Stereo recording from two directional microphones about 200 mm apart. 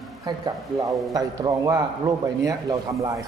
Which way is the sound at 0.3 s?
20° right (ahead or behind).